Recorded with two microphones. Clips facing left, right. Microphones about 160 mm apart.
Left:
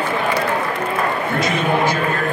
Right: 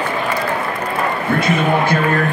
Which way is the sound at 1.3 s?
55° right (ahead or behind).